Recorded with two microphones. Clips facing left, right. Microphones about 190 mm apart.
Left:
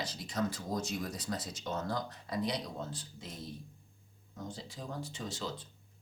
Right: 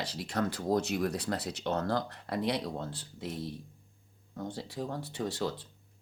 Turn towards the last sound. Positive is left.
turn(degrees=-65)  # may be behind; listen again after turning